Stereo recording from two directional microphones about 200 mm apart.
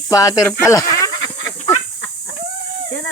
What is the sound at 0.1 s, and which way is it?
Speech, 15° left (ahead or behind).